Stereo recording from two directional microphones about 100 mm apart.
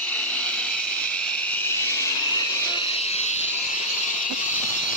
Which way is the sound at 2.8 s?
90° left.